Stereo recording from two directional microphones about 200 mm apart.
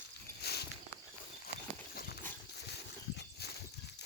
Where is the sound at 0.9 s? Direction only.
10° left (ahead or behind).